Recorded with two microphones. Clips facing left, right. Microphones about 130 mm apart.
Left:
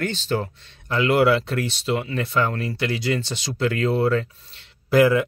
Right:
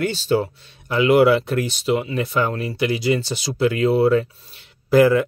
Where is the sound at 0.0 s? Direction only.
10° right (ahead or behind).